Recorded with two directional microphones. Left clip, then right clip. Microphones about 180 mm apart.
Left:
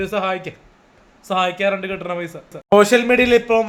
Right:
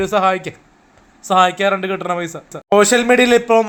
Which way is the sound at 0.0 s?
30° right (ahead or behind).